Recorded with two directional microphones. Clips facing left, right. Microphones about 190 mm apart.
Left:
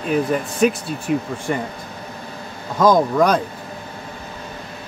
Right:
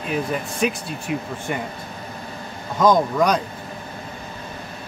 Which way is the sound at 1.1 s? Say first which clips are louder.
Left 6 dB; 45° left (ahead or behind).